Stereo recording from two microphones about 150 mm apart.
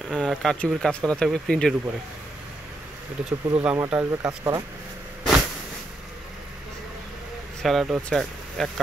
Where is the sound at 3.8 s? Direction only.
15° right (ahead or behind).